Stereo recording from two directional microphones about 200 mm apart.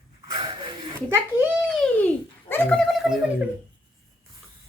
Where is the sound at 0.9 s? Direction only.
10° right (ahead or behind).